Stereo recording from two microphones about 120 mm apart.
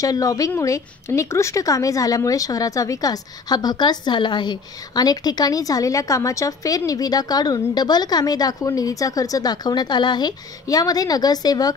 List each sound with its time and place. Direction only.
0.0 s a woman's voice: 30° left (ahead or behind)